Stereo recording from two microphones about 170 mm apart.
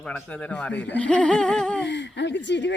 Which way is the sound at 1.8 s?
90° left.